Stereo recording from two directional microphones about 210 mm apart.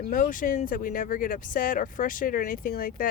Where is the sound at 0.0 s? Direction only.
40° left (ahead or behind).